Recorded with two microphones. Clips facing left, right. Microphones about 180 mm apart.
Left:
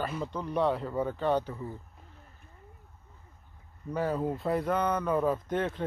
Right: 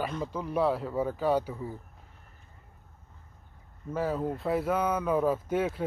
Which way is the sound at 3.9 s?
Centre (ahead or behind).